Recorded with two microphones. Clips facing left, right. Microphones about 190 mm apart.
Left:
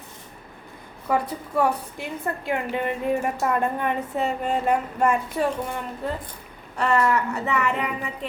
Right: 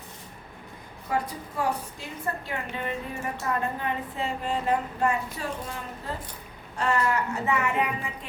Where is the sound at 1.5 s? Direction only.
65° left (ahead or behind).